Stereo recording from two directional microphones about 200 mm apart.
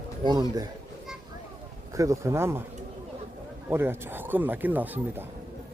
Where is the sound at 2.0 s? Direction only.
15° right (ahead or behind).